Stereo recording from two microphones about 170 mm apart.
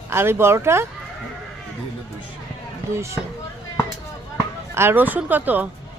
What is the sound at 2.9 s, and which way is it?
Speech, 15° right (ahead or behind).